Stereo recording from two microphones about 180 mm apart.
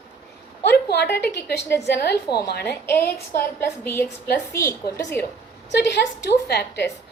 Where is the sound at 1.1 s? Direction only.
65° left (ahead or behind).